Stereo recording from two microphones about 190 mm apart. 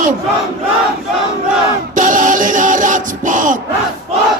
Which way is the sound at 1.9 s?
45° right (ahead or behind).